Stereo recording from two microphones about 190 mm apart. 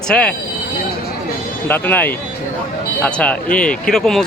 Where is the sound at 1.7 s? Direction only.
10° left (ahead or behind).